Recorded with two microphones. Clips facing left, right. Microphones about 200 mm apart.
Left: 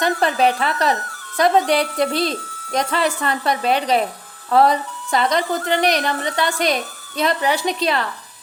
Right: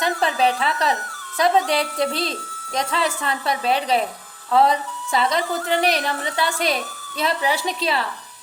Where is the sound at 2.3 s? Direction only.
45° left (ahead or behind).